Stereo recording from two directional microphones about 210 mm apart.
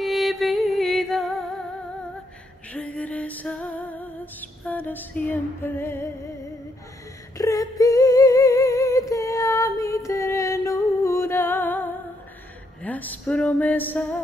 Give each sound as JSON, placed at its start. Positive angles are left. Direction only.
{"t": 0.0, "sound": "music", "side_deg": 0}
{"t": 2.7, "sound": "music", "side_deg": 5}
{"t": 7.3, "sound": "singing", "side_deg": 15}
{"t": 12.8, "sound": "speech", "side_deg": 10}